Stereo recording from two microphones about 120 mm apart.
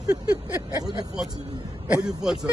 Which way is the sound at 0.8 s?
5° right (ahead or behind).